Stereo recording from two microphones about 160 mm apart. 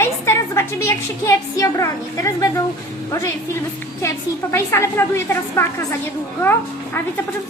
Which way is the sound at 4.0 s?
15° left (ahead or behind).